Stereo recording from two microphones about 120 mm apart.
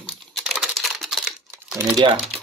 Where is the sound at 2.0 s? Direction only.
45° right (ahead or behind).